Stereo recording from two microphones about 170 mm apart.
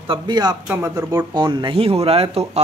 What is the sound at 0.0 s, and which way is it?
Speech, 25° right (ahead or behind).